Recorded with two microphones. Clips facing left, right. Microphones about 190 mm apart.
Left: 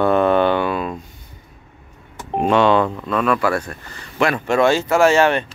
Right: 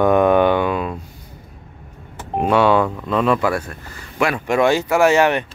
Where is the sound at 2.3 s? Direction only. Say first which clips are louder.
Even; 10° right (ahead or behind).